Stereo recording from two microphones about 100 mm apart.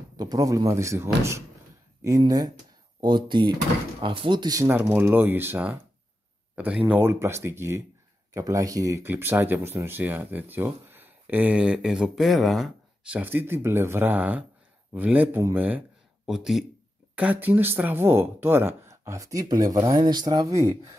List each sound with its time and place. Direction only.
0.2 s speech: 40° right (ahead or behind)
2.0 s speech: 35° right (ahead or behind)
3.0 s speech: 50° right (ahead or behind)
4.6 s speech: 20° right (ahead or behind)
9.0 s speech: 20° right (ahead or behind); by 12.7 s centre (ahead or behind)
13.0 s speech: 15° right (ahead or behind)
16.3 s speech: 5° right (ahead or behind)
17.2 s speech: 15° right (ahead or behind); by 20.7 s 35° right (ahead or behind)